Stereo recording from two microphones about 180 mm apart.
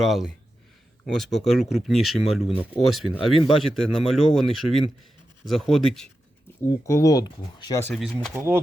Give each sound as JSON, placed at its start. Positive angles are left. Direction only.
{"t": 0.0, "sound": "speech", "side_deg": 0}
{"t": 6.8, "sound": "speech", "side_deg": 15}
{"t": 7.9, "sound": "speech", "side_deg": 0}
{"t": 8.3, "sound": "speech", "side_deg": -15}